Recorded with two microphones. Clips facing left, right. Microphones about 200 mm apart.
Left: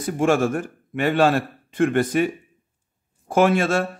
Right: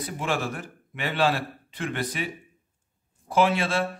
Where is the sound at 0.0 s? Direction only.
45° left (ahead or behind).